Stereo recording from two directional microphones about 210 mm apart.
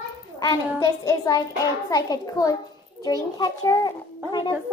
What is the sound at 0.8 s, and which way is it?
A woman's voice, 15° left (ahead or behind).